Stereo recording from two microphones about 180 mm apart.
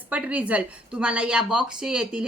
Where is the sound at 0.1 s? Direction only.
5° right (ahead or behind).